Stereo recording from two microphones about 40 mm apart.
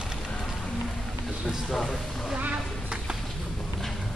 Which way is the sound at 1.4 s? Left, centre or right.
Centre.